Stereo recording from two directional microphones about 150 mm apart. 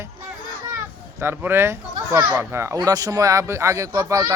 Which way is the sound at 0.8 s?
15° right (ahead or behind).